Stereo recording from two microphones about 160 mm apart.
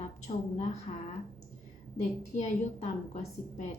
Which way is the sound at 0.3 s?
45° left (ahead or behind).